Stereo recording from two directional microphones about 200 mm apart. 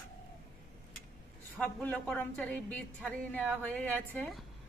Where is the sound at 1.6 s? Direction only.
5° left (ahead or behind).